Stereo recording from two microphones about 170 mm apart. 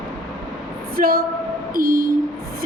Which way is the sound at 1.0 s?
60° right (ahead or behind).